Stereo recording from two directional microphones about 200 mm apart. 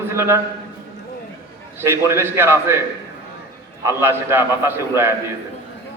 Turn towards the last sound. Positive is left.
turn(degrees=-15)  # may be behind; listen again after turning